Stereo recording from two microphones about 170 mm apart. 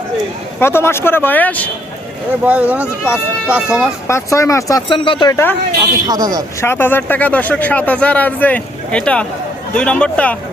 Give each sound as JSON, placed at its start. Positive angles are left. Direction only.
{"t": 0.6, "sound": "speech", "side_deg": 15}
{"t": 2.4, "sound": "speech", "side_deg": -10}
{"t": 4.0, "sound": "speech", "side_deg": 15}
{"t": 4.9, "sound": "speech", "side_deg": 30}
{"t": 5.3, "sound": "speech", "side_deg": 15}
{"t": 6.1, "sound": "speech", "side_deg": -20}
{"t": 6.6, "sound": "speech", "side_deg": 15}